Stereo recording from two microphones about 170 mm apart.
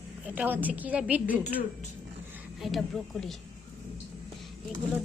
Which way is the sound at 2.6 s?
Centre (ahead or behind).